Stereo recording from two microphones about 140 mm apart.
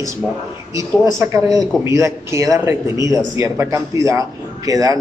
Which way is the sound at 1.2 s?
25° right (ahead or behind).